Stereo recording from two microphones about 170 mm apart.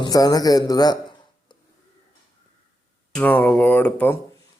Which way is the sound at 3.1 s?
10° left (ahead or behind).